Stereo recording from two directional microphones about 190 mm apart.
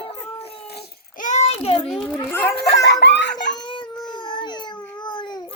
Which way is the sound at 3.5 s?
25° left (ahead or behind).